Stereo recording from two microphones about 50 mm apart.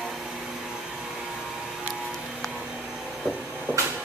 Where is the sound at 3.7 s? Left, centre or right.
Right.